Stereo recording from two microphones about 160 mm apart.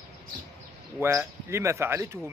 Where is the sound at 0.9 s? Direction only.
15° right (ahead or behind).